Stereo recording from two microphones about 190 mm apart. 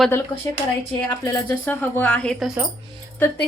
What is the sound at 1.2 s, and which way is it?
Speech, 15° left (ahead or behind).